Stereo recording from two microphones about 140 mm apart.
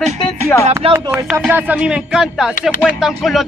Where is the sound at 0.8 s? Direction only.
45° right (ahead or behind).